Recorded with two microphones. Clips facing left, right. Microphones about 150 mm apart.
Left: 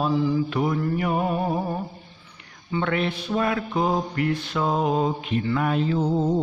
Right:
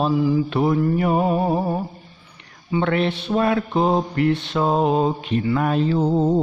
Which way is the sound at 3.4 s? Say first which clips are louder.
Right 5 dB; 40° right (ahead or behind).